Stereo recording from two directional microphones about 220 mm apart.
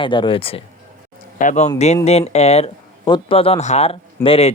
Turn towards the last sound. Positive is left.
turn(degrees=25)  # may be behind; listen again after turning